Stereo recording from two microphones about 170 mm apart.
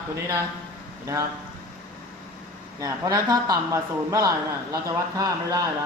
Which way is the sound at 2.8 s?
20° right (ahead or behind).